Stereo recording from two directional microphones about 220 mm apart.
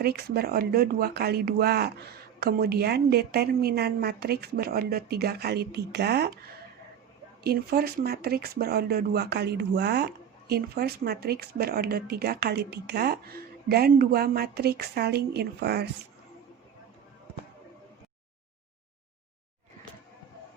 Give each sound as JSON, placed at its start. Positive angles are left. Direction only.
{"t": 0.3, "sound": "speech", "side_deg": -45}
{"t": 7.4, "sound": "speech", "side_deg": -45}